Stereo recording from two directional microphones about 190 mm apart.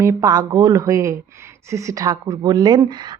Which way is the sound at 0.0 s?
20° right (ahead or behind).